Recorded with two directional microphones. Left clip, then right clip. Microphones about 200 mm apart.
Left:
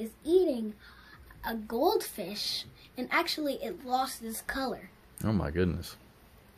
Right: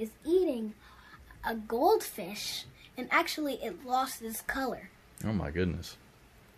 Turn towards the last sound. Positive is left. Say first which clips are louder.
# left 2 dB
turn(degrees=10)  # may be behind; listen again after turning